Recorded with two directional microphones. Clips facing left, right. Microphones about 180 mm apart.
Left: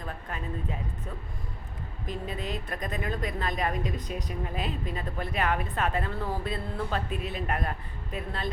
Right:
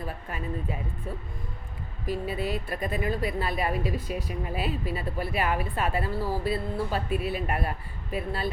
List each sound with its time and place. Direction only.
0.0 s a woman's voice: 5° right (ahead or behind)
2.0 s a woman's voice: 5° right (ahead or behind)